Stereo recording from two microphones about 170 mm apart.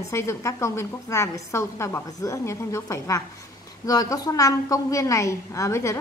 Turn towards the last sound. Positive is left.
turn(degrees=15)  # may be behind; listen again after turning